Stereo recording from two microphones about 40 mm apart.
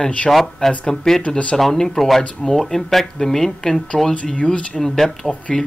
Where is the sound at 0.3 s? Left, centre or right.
Centre.